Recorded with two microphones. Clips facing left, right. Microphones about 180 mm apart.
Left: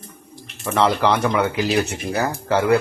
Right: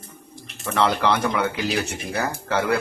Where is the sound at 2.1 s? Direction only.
30° left (ahead or behind).